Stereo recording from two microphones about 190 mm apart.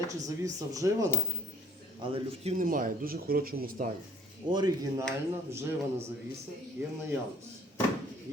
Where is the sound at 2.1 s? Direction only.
35° right (ahead or behind); by 3.8 s 50° right (ahead or behind).